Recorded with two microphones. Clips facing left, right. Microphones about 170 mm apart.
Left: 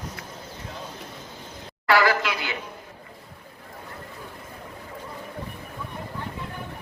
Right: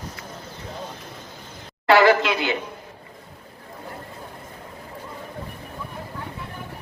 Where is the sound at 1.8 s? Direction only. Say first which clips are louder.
Right 5 dB; 25° right (ahead or behind).